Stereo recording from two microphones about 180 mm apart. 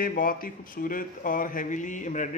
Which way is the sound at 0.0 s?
50° left (ahead or behind).